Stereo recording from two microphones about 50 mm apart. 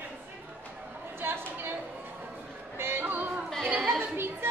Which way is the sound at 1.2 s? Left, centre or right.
Right.